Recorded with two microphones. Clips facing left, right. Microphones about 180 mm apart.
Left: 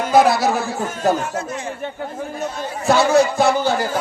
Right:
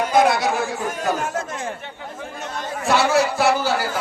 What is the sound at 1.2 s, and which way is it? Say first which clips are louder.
Speech: left 1 dB; 50° right (ahead or behind).